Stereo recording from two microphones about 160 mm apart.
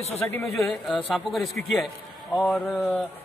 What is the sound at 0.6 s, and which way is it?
A man's voice, centre (ahead or behind).